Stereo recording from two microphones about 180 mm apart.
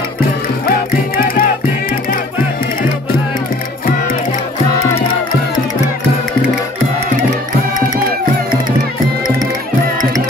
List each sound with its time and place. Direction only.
0.7 s music: 55° left (ahead or behind)